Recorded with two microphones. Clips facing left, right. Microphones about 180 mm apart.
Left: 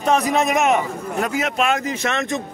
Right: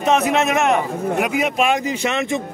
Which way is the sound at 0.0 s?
Centre (ahead or behind).